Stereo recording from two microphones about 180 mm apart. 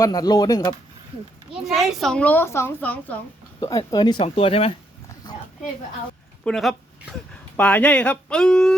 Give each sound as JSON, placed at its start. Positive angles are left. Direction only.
{"t": 0.0, "sound": "speech", "side_deg": 20}
{"t": 1.6, "sound": "a child's voice", "side_deg": 0}
{"t": 3.6, "sound": "speech", "side_deg": 20}
{"t": 5.2, "sound": "a sound", "side_deg": 20}
{"t": 6.4, "sound": "a sound", "side_deg": 0}
{"t": 7.5, "sound": "a child's voice", "side_deg": 10}